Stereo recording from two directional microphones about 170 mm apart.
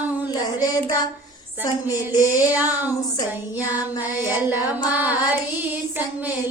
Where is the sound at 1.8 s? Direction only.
20° left (ahead or behind).